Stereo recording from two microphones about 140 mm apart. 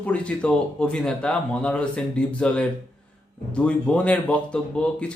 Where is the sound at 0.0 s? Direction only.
10° left (ahead or behind).